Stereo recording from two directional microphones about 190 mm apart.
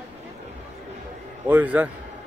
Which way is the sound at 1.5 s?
10° right (ahead or behind).